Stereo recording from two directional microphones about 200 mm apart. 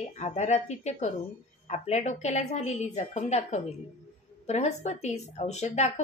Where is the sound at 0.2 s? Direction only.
35° left (ahead or behind).